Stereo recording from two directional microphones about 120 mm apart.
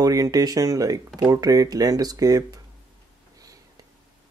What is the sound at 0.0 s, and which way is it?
Speech, 30° right (ahead or behind).